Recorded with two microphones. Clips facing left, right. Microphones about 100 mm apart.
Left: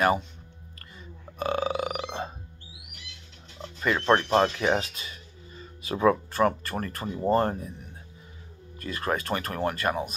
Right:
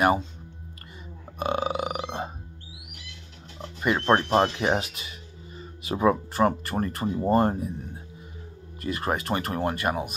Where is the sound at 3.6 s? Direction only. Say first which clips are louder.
Right 2 dB; 15° right (ahead or behind).